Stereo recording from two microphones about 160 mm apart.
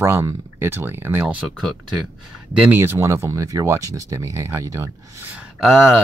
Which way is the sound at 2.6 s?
15° right (ahead or behind).